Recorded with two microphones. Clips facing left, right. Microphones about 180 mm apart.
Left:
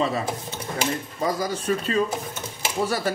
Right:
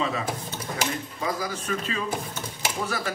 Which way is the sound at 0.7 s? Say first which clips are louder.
Left 4 dB; 40° left (ahead or behind).